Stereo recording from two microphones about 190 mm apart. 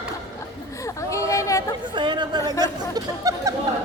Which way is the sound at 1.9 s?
25° right (ahead or behind).